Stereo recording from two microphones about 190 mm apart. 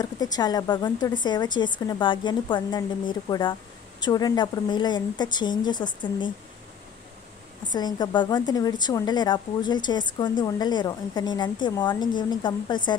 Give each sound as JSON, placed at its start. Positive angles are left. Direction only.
{"t": 0.0, "sound": "a woman's voice", "side_deg": 20}
{"t": 7.7, "sound": "a woman's voice", "side_deg": 20}